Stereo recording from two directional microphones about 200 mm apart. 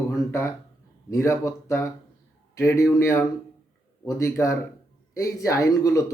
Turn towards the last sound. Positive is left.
turn(degrees=15)  # may be behind; listen again after turning